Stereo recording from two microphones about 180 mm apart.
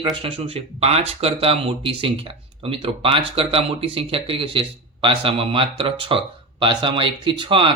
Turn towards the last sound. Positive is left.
turn(degrees=-25)  # may be behind; listen again after turning